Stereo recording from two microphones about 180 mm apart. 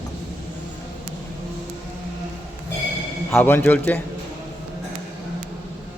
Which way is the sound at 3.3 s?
10° left (ahead or behind).